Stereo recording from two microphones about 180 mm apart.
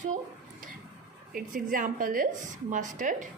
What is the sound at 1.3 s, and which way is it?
A woman's voice, 50° right (ahead or behind).